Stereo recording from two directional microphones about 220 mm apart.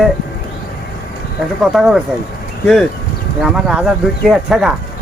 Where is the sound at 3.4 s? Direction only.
5° right (ahead or behind).